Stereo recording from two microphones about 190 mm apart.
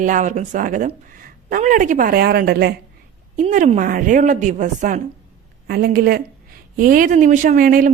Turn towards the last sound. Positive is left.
turn(degrees=-50)  # may be behind; listen again after turning